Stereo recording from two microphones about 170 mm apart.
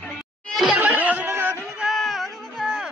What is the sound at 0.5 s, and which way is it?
Laughter, centre (ahead or behind).